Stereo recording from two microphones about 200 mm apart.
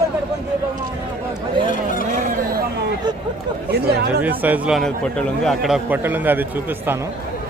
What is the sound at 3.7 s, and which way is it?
Speech, 55° right (ahead or behind).